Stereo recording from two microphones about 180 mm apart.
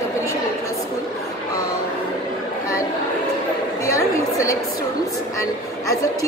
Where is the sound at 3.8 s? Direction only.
15° left (ahead or behind).